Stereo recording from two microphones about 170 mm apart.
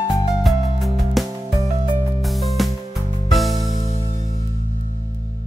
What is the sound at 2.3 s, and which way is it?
Music, centre (ahead or behind).